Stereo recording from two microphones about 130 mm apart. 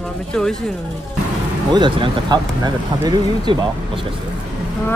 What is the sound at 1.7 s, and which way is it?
Speech, 40° right (ahead or behind).